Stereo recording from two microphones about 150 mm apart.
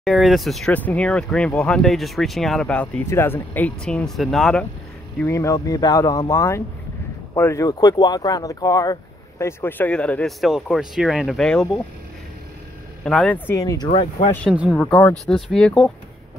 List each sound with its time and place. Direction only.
0.0 s speech: centre (ahead or behind)
5.2 s speech: 20° left (ahead or behind); by 11.8 s 5° left (ahead or behind)
13.0 s speech: 5° left (ahead or behind)
13.5 s speech: 20° left (ahead or behind)
14.5 s speech: 10° right (ahead or behind)
14.8 s speech: 10° left (ahead or behind)